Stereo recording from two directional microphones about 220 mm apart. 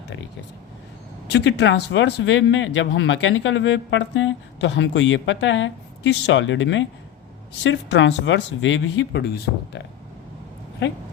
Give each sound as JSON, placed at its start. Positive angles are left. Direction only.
{"t": 1.3, "sound": "speech", "side_deg": 55}